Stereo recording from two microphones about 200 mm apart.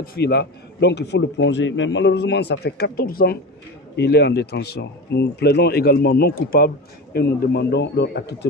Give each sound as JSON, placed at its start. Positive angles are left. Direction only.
{"t": 0.1, "sound": "a man's voice", "side_deg": 55}